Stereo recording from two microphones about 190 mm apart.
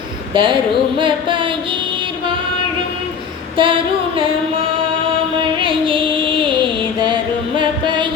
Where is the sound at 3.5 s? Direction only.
25° right (ahead or behind).